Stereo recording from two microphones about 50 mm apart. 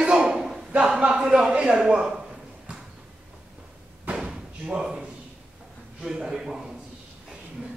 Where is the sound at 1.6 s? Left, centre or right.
Centre.